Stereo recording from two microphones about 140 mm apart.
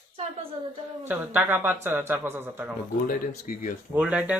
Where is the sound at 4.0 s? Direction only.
10° right (ahead or behind).